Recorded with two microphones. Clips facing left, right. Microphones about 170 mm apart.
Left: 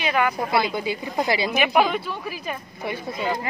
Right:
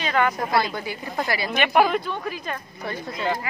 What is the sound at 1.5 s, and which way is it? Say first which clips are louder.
Speech: right 4 dB; 5° left (ahead or behind).